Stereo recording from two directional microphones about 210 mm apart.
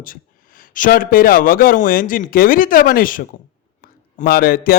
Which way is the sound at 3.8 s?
45° left (ahead or behind).